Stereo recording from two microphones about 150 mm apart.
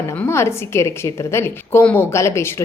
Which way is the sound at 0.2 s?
15° left (ahead or behind).